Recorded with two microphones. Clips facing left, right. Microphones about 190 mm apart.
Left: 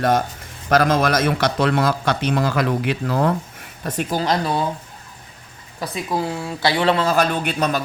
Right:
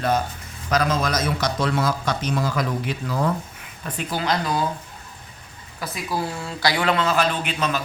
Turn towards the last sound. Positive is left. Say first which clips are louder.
# left 3 dB
turn(degrees=40)  # may be behind; listen again after turning